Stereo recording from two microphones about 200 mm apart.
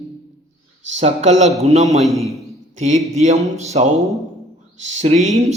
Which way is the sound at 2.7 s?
35° right (ahead or behind).